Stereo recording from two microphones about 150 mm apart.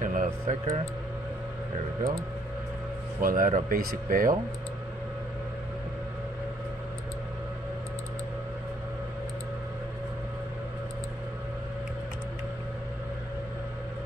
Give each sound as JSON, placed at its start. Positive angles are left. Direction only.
{"t": 0.0, "sound": "music", "side_deg": -60}
{"t": 3.2, "sound": "speech", "side_deg": -65}